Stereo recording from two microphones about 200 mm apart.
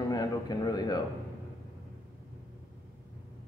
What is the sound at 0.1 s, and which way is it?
Speech, 20° left (ahead or behind).